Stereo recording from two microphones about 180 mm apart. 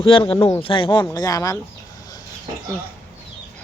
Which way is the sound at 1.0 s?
20° left (ahead or behind).